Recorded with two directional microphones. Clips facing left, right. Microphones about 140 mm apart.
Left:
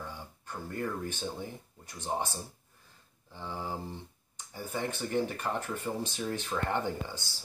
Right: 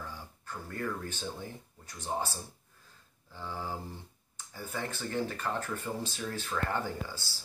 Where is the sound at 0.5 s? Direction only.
15° left (ahead or behind).